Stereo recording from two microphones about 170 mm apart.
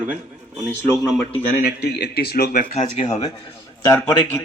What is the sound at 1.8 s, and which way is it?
Speech, 65° left (ahead or behind).